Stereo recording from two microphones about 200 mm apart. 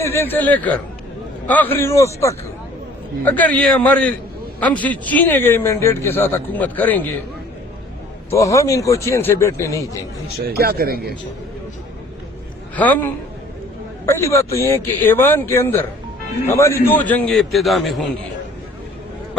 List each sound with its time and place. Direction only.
0.0 s a man's voice: 10° left (ahead or behind)
8.3 s a man's voice: 15° left (ahead or behind)
10.4 s speech: 50° right (ahead or behind)
14.1 s a man's voice: 15° left (ahead or behind)